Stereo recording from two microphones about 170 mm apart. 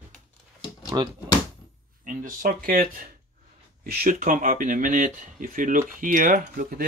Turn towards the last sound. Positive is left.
turn(degrees=-55)  # may be behind; listen again after turning